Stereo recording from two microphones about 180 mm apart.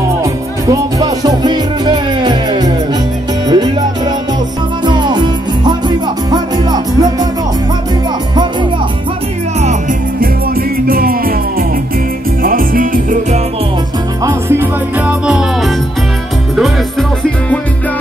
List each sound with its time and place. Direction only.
0.2 s music: 20° right (ahead or behind)
10.2 s music: 55° right (ahead or behind)
12.4 s music: 50° right (ahead or behind)
14.2 s music: 10° right (ahead or behind)